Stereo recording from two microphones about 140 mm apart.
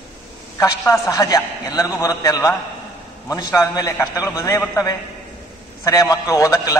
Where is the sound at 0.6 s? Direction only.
25° left (ahead or behind).